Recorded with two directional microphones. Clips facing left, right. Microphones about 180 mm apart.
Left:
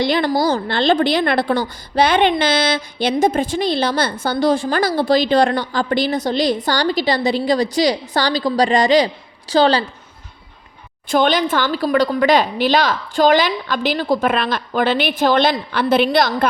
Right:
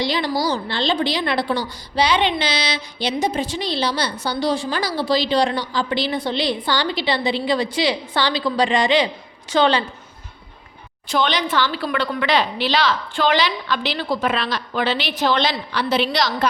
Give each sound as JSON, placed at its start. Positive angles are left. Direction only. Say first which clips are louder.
{"t": 0.0, "sound": "a woman's voice", "louder": "left 5 dB", "side_deg": 50}
{"t": 11.1, "sound": "a woman's voice", "louder": "left 5 dB", "side_deg": 50}